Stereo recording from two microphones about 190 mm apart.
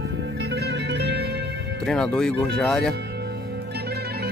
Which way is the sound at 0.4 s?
65° right (ahead or behind).